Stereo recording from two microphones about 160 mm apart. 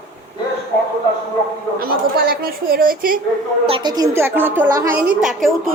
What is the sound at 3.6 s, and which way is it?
A woman's voice, 30° right (ahead or behind).